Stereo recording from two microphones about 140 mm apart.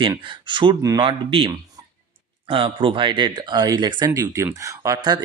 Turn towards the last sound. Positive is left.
turn(degrees=-25)  # may be behind; listen again after turning